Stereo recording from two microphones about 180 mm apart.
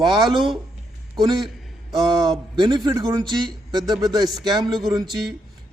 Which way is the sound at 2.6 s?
25° right (ahead or behind).